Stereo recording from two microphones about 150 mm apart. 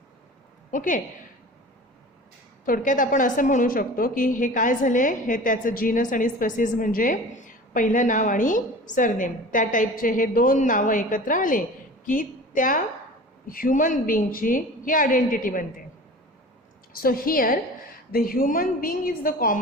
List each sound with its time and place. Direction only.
0.7 s a woman's voice: 60° left (ahead or behind)
2.6 s a woman's voice: 65° left (ahead or behind)
16.9 s a woman's voice: 75° left (ahead or behind)